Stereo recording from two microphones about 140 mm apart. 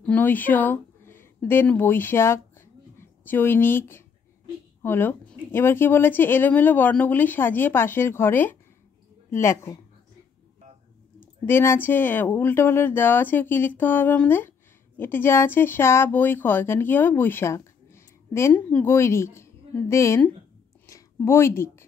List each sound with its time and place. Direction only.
0.0 s a woman's voice: 10° left (ahead or behind)
11.1 s speech: 15° left (ahead or behind)